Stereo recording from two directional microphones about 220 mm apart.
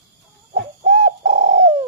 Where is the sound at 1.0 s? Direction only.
25° right (ahead or behind).